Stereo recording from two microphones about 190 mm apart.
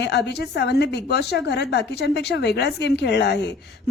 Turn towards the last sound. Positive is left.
turn(degrees=65)  # may be behind; listen again after turning